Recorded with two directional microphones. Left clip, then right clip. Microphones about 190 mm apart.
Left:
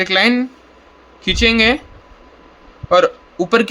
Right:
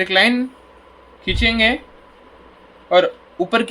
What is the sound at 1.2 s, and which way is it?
Speech, 35° left (ahead or behind).